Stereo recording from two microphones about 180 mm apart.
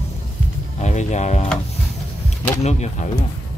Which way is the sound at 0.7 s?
40° left (ahead or behind).